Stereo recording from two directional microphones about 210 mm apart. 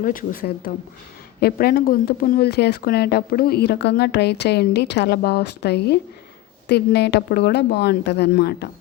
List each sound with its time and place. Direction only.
0.0 s speech: 40° left (ahead or behind)